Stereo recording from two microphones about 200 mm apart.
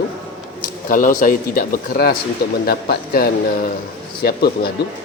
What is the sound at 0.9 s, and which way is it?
A man's voice, 45° left (ahead or behind).